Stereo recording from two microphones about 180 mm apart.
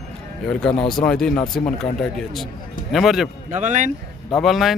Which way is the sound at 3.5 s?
40° right (ahead or behind).